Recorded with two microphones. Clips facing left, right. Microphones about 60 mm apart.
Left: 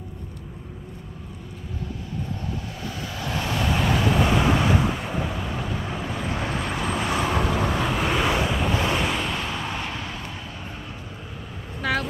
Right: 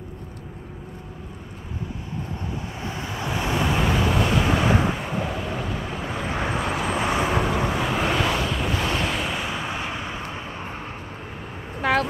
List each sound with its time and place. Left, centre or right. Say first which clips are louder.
2.9 s vehicle: right 2 dB; right; by 4.6 s centre
4.6 s vehicle: right 1 dB; centre
5.0 s vehicle: right 1 dB; centre
6.0 s vehicle: right 3 dB; centre
7.3 s vehicle: even; centre
11.8 s vehicle: right 4 dB; right